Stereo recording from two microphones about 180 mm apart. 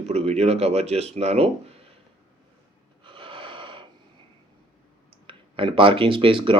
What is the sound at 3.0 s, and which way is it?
Snort, 30° right (ahead or behind).